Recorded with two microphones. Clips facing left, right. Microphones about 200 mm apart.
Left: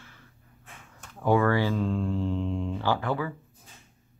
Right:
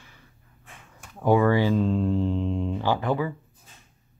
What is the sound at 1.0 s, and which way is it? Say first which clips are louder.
Speech: right 3 dB; 15° right (ahead or behind).